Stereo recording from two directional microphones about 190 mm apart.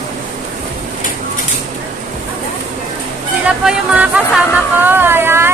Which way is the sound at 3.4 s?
5° right (ahead or behind).